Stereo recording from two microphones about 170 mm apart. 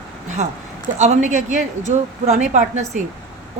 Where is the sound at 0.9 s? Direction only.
45° right (ahead or behind).